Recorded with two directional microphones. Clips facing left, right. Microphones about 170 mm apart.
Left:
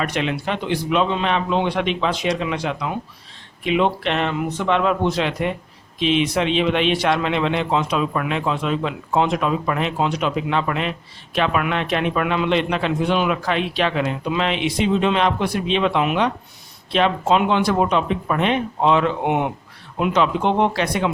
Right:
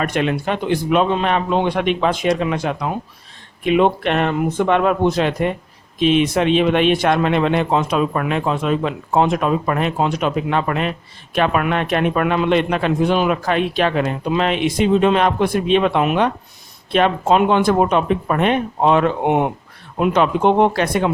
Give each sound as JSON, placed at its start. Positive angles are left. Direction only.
{"t": 0.0, "sound": "a man's voice", "side_deg": -50}